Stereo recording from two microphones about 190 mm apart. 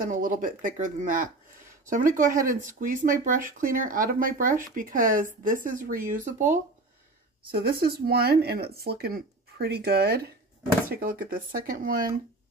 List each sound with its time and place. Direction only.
0.0 s speech: 45° right (ahead or behind)
7.5 s speech: 55° right (ahead or behind)